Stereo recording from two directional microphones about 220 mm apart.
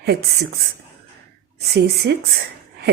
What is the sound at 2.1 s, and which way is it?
Speech, 50° right (ahead or behind).